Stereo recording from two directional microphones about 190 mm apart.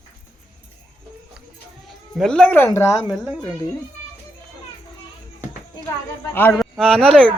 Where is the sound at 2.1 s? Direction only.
5° left (ahead or behind).